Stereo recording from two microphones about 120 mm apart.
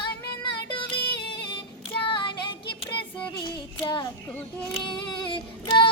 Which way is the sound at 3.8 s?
40° left (ahead or behind).